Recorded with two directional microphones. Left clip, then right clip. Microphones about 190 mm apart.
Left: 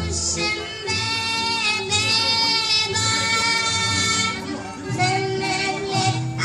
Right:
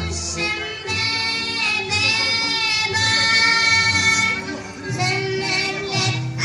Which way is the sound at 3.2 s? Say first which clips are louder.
Right 7 dB; 15° right (ahead or behind).